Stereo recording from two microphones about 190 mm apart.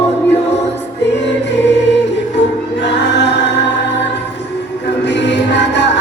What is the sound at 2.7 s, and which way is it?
Choir, 65° left (ahead or behind).